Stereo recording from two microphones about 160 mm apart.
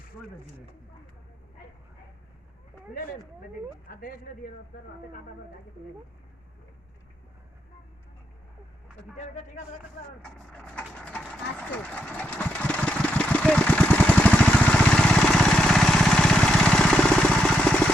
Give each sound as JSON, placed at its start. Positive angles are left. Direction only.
{"t": 3.8, "sound": "speech", "side_deg": 65}
{"t": 9.1, "sound": "speech", "side_deg": 50}
{"t": 10.2, "sound": "a sound", "side_deg": 5}
{"t": 11.2, "sound": "vehicle", "side_deg": 5}